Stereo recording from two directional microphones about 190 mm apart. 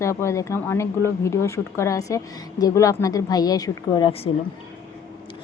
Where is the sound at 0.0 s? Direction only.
15° left (ahead or behind).